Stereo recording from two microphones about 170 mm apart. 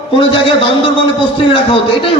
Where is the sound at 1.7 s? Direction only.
30° left (ahead or behind).